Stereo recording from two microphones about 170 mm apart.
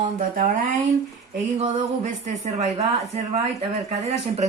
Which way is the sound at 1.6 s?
45° right (ahead or behind).